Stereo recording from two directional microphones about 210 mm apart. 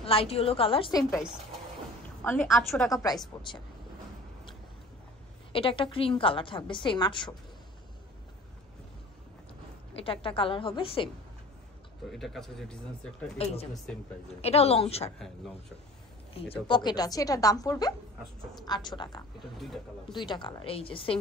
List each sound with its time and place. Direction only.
0.0 s a woman's voice: 25° left (ahead or behind)
2.2 s speech: 5° left (ahead or behind)
2.9 s a woman's voice: 15° left (ahead or behind)
5.5 s a woman's voice: 25° left (ahead or behind)
9.9 s a woman's voice: 25° left (ahead or behind)
12.1 s a woman's voice: centre (ahead or behind)
14.4 s a woman's voice: 30° left (ahead or behind)
15.1 s speech: centre (ahead or behind)
16.3 s a woman's voice: 25° left (ahead or behind)